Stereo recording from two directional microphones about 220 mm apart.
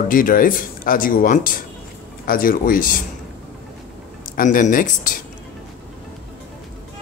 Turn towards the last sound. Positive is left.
turn(degrees=35)  # may be behind; listen again after turning